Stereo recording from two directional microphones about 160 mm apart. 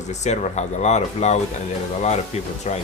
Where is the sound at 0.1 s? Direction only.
45° left (ahead or behind).